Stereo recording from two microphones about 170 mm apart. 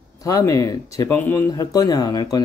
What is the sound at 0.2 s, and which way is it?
Speech, 20° left (ahead or behind).